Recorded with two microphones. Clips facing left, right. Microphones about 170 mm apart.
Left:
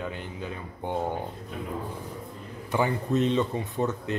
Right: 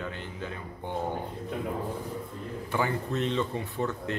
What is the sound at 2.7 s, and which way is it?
Speech, 20° left (ahead or behind).